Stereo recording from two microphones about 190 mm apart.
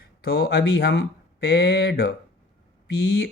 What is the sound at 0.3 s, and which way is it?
Speech, 60° left (ahead or behind).